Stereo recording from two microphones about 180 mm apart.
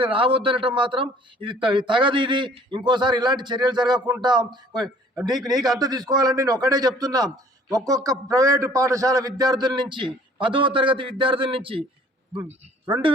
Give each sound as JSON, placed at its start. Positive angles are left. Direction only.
{"t": 0.0, "sound": "a man's voice", "side_deg": -30}
{"t": 5.3, "sound": "a man's voice", "side_deg": 0}
{"t": 5.8, "sound": "a man's voice", "side_deg": -20}